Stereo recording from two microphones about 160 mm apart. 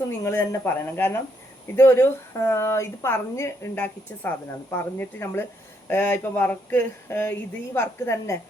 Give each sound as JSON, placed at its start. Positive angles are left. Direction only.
{"t": 0.3, "sound": "a woman's voice", "side_deg": 15}